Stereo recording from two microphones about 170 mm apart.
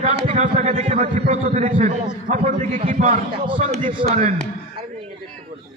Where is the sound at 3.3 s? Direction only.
30° right (ahead or behind).